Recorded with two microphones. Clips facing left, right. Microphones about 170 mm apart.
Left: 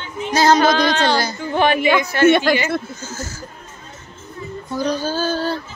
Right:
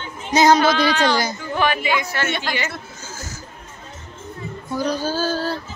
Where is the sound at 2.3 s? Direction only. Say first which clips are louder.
Left 12 dB; 55° left (ahead or behind).